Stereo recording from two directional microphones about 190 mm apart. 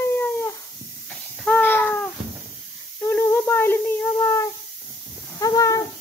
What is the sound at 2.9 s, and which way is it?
Child singing, 10° left (ahead or behind).